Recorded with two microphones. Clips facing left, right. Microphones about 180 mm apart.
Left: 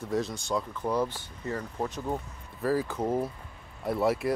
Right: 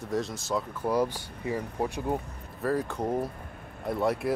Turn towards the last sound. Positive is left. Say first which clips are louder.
# left 1 dB
turn(degrees=0)  # may be behind; listen again after turning